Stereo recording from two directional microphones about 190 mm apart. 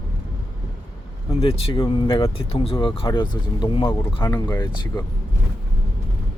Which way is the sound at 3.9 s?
15° left (ahead or behind).